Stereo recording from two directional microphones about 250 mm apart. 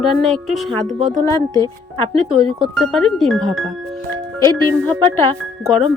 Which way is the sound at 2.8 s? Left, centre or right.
Centre.